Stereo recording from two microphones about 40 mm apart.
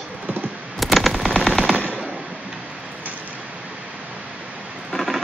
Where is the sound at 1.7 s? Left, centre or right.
Right.